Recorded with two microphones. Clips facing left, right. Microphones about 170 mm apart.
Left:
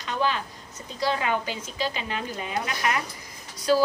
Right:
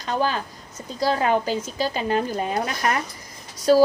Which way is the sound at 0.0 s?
40° right (ahead or behind).